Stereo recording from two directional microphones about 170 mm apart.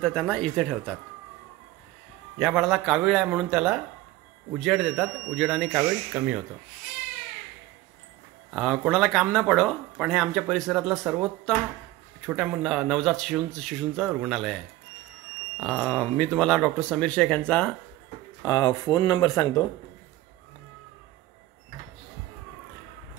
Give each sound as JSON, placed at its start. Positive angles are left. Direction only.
{"t": 0.0, "sound": "speech", "side_deg": 5}
{"t": 2.3, "sound": "speech", "side_deg": 0}
{"t": 8.5, "sound": "speech", "side_deg": 0}
{"t": 15.6, "sound": "speech", "side_deg": 0}
{"t": 18.4, "sound": "speech", "side_deg": 20}